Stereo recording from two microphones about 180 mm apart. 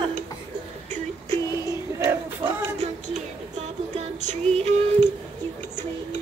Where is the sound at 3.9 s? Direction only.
40° right (ahead or behind).